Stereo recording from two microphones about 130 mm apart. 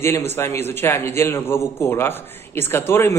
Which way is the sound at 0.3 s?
20° left (ahead or behind).